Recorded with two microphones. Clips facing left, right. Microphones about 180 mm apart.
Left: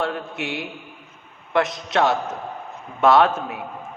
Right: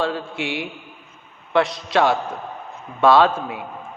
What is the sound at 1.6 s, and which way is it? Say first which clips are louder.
Speech: right 2 dB; 20° left (ahead or behind).